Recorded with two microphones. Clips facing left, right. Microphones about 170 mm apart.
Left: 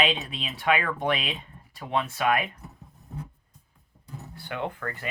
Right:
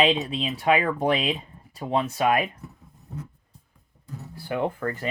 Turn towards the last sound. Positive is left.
turn(degrees=-30)  # may be behind; listen again after turning